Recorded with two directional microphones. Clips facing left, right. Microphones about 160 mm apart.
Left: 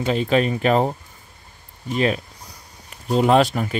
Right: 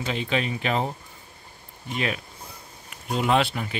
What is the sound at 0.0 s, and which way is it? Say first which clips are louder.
Speech: left 8 dB; 45° left (ahead or behind).